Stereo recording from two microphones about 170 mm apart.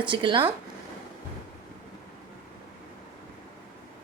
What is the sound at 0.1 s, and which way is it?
Speech, 30° right (ahead or behind).